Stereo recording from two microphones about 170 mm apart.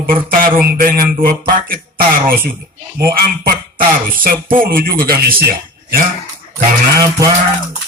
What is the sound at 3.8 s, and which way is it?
A man's voice, 55° right (ahead or behind).